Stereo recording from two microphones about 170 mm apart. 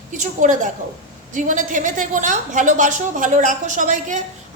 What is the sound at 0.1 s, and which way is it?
A woman's voice, 45° right (ahead or behind).